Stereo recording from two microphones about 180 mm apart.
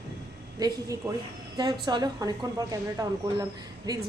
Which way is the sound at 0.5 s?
20° right (ahead or behind).